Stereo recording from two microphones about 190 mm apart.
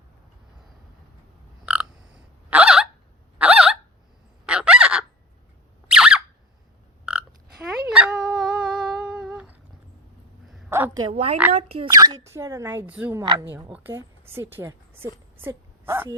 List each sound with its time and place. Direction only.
1.6 s frog: 5° right (ahead or behind)
2.5 s a sound: 5° right (ahead or behind)
4.4 s fowl: 5° right (ahead or behind)
5.9 s a sound: 5° right (ahead or behind)
7.0 s burping: 5° right (ahead or behind)
7.7 s dog: 5° right (ahead or behind)
10.7 s a sound: 15° right (ahead or behind)
11.0 s a woman's voice: 30° right (ahead or behind)
11.9 s a woman's voice: 20° right (ahead or behind)